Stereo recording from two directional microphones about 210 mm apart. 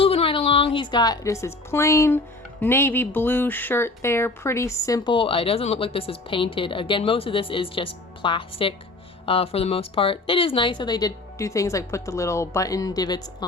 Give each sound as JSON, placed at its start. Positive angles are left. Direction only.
{"t": 0.0, "sound": "a woman's voice", "side_deg": 25}